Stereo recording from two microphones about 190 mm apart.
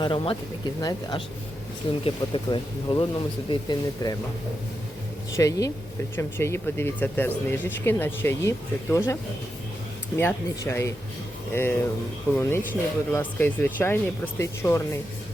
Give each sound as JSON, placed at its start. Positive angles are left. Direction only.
{"t": 0.0, "sound": "speech", "side_deg": 25}
{"t": 5.4, "sound": "speech", "side_deg": 20}
{"t": 10.2, "sound": "speech", "side_deg": 10}